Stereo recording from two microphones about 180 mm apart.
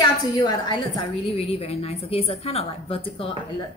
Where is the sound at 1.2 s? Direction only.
35° left (ahead or behind).